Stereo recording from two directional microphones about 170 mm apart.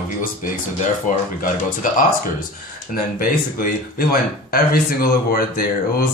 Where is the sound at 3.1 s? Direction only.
60° left (ahead or behind).